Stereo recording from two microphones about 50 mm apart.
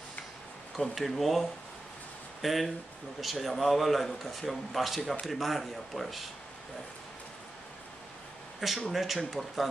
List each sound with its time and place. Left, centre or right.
0.7 s speech: centre
8.5 s speech: centre